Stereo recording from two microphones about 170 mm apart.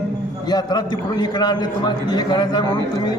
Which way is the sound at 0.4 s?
25° left (ahead or behind).